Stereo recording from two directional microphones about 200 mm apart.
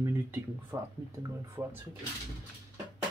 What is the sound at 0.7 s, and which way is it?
Speech, 15° right (ahead or behind).